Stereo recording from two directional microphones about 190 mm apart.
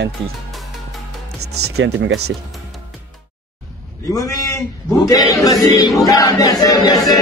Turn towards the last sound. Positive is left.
turn(degrees=20)  # may be behind; listen again after turning